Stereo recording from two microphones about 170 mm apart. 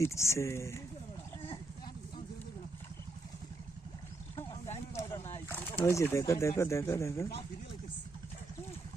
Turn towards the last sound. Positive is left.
turn(degrees=15)  # may be behind; listen again after turning